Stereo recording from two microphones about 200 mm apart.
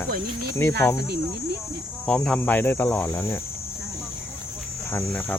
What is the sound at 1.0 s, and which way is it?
Cricket, 55° right (ahead or behind).